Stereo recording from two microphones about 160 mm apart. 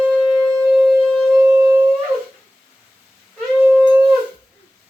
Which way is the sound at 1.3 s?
15° right (ahead or behind).